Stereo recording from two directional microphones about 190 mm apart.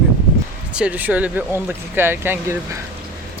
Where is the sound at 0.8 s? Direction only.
10° right (ahead or behind).